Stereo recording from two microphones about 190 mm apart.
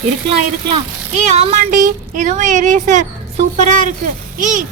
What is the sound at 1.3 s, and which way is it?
A woman's voice, 35° right (ahead or behind).